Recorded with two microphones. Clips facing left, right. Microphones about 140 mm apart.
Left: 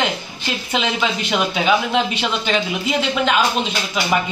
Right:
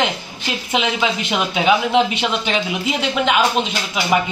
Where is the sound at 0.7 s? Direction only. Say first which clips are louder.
Right 2 dB; 15° right (ahead or behind).